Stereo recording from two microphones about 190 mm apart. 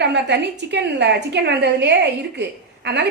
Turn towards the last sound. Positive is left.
turn(degrees=-65)  # may be behind; listen again after turning